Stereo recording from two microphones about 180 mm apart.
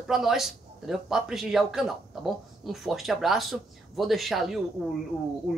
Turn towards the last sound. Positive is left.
turn(degrees=-5)  # may be behind; listen again after turning